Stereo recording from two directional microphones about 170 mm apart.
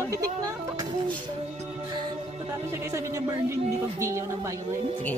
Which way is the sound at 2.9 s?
15° right (ahead or behind).